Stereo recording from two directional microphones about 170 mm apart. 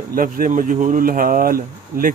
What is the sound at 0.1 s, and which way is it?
Speech, 50° right (ahead or behind).